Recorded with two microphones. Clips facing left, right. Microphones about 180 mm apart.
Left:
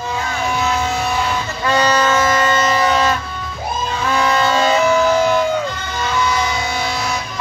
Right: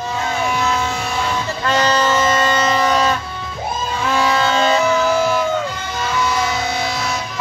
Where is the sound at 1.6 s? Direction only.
10° left (ahead or behind).